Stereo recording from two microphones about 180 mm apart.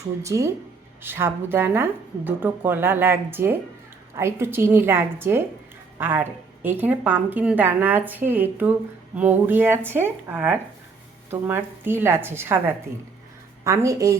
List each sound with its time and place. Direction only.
0.2 s a woman's voice: 15° right (ahead or behind)